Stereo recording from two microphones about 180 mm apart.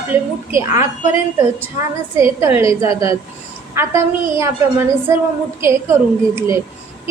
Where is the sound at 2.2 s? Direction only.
15° right (ahead or behind).